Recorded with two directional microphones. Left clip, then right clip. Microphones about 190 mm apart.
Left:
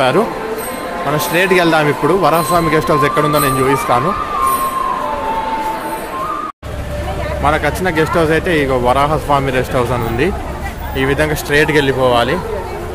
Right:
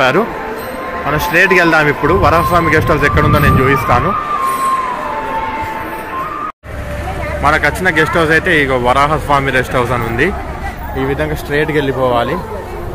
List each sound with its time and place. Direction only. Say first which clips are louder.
1.1 s speech: right 3 dB; 5° left (ahead or behind)
7.4 s speech: right 3 dB; 10° left (ahead or behind)